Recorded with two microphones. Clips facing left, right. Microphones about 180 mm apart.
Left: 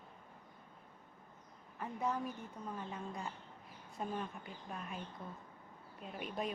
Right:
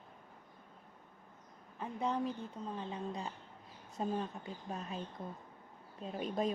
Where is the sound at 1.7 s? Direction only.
25° right (ahead or behind).